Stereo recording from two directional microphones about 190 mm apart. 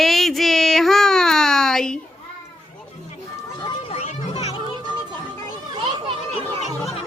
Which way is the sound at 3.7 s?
30° left (ahead or behind).